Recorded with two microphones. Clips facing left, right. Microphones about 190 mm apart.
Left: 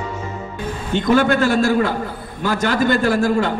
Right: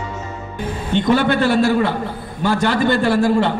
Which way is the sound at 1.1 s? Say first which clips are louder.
Even; 45° left (ahead or behind).